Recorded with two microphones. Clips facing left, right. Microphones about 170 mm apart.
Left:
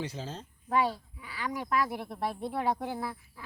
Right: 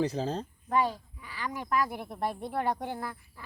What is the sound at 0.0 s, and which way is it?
Speech, 35° right (ahead or behind).